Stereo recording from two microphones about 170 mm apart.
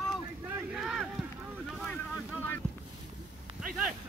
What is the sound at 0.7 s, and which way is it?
Run, 5° right (ahead or behind).